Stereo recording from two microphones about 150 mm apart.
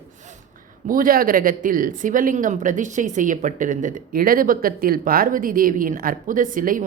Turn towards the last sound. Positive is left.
turn(degrees=-65)  # may be behind; listen again after turning